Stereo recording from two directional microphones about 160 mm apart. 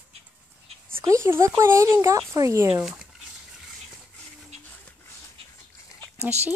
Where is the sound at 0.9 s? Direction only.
20° right (ahead or behind).